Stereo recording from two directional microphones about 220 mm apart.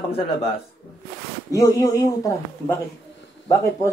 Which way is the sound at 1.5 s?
15° left (ahead or behind).